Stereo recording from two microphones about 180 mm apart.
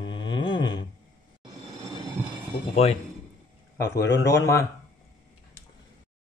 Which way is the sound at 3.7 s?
15° left (ahead or behind).